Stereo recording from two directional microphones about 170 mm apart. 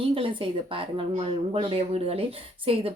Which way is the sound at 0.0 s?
30° right (ahead or behind).